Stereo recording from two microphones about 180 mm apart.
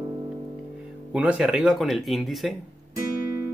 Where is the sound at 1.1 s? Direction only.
5° right (ahead or behind).